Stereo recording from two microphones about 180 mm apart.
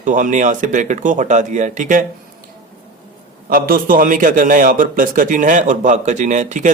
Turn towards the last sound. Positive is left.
turn(degrees=-45)  # may be behind; listen again after turning